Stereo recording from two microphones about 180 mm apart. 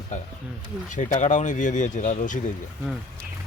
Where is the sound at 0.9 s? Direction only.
45° left (ahead or behind).